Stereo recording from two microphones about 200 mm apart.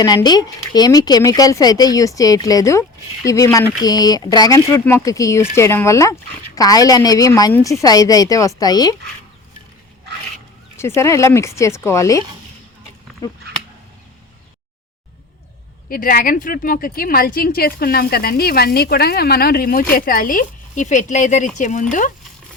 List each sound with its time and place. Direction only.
0.0 s a woman's voice: 20° left (ahead or behind)
10.8 s a woman's voice: 15° left (ahead or behind)
13.2 s a sound: 20° left (ahead or behind)
15.9 s a woman's voice: 45° left (ahead or behind)